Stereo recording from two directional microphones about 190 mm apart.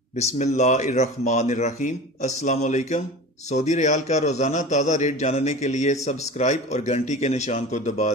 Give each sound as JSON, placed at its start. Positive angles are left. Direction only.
{"t": 0.2, "sound": "a man's voice", "side_deg": 35}